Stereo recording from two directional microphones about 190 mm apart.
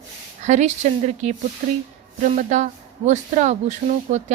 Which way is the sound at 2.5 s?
40° right (ahead or behind).